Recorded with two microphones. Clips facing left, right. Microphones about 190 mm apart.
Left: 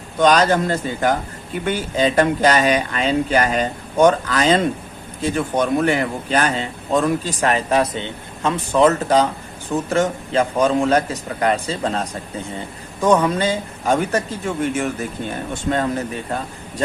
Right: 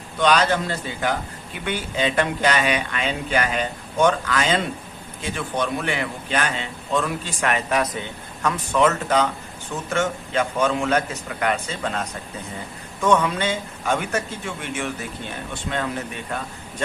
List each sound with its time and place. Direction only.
0.2 s a man's voice: 45° left (ahead or behind)